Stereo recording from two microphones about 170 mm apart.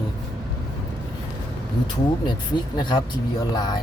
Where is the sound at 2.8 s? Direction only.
30° left (ahead or behind).